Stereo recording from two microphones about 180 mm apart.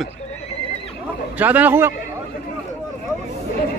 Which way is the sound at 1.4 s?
10° right (ahead or behind).